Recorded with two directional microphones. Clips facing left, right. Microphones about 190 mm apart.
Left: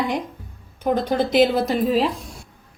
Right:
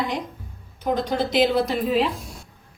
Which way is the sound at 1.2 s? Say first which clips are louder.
Left 4 dB; 50° left (ahead or behind).